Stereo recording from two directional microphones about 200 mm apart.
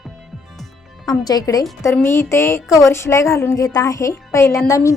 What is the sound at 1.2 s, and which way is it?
A woman's voice, 20° left (ahead or behind).